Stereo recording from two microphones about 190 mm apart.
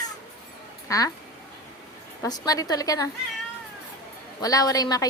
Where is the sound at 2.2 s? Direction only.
20° left (ahead or behind).